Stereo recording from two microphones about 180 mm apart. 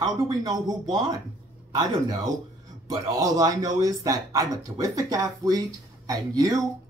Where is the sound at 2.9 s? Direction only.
20° right (ahead or behind).